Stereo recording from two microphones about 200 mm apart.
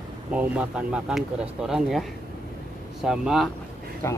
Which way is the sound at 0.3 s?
5° right (ahead or behind).